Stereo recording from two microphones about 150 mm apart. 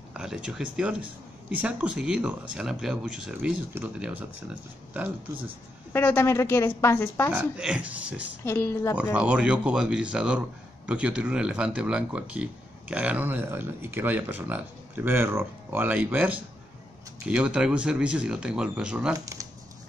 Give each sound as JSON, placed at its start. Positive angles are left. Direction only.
{"t": 0.1, "sound": "speech", "side_deg": -5}
{"t": 5.9, "sound": "a woman's voice", "side_deg": 15}
{"t": 7.3, "sound": "speech", "side_deg": -5}
{"t": 8.5, "sound": "a woman's voice", "side_deg": 15}
{"t": 9.1, "sound": "speech", "side_deg": -10}
{"t": 19.1, "sound": "speech", "side_deg": -20}